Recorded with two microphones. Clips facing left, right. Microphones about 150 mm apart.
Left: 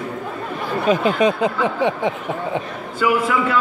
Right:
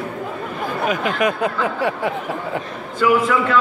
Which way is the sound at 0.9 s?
25° left (ahead or behind).